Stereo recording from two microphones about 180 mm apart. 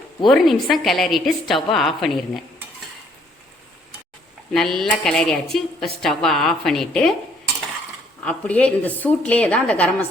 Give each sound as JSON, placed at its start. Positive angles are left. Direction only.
{"t": 0.3, "sound": "a woman's voice", "side_deg": 0}
{"t": 4.5, "sound": "a woman's voice", "side_deg": 0}
{"t": 8.2, "sound": "a woman's voice", "side_deg": 5}